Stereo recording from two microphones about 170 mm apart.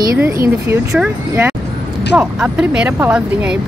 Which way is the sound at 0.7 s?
10° right (ahead or behind).